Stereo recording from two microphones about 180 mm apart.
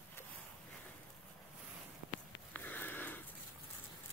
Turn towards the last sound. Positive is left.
turn(degrees=10)  # may be behind; listen again after turning